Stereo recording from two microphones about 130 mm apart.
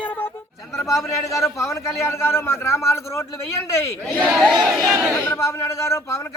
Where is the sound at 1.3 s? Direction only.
20° left (ahead or behind).